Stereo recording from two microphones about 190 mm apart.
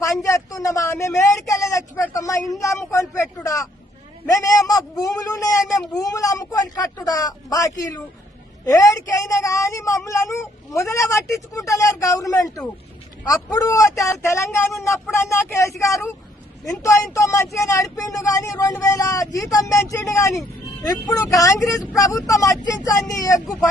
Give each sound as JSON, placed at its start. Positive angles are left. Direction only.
{"t": 0.0, "sound": "speech", "side_deg": 15}